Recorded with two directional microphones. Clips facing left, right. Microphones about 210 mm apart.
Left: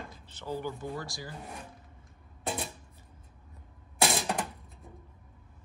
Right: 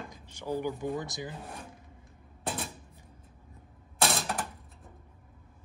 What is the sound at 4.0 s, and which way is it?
Typewriter, centre (ahead or behind).